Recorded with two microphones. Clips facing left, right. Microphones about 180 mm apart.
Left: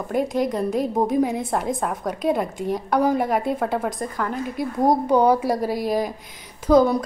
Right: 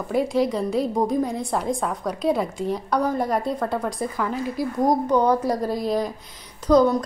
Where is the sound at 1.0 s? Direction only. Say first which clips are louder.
Left 2 dB; 5° left (ahead or behind).